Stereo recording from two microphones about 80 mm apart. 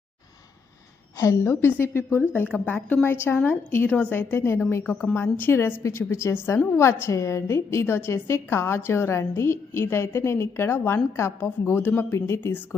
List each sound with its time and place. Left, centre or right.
1.2 s a woman's voice: left
12.1 s a woman's voice: left
12.4 s a woman's voice: left